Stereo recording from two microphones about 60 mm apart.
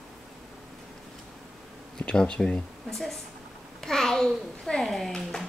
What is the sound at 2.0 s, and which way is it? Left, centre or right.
Speech, centre.